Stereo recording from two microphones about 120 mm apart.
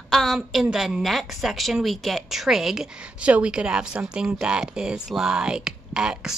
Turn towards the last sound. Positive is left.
turn(degrees=-5)  # may be behind; listen again after turning